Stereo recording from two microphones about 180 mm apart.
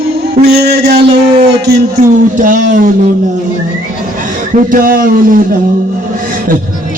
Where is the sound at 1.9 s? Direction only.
45° right (ahead or behind).